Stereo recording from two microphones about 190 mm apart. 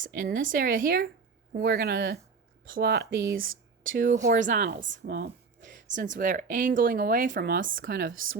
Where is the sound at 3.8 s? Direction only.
45° right (ahead or behind).